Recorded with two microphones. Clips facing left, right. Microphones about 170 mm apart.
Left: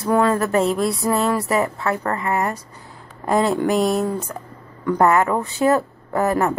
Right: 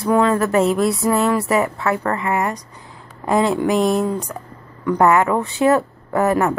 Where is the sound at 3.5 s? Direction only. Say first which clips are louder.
Right 1 dB; centre (ahead or behind).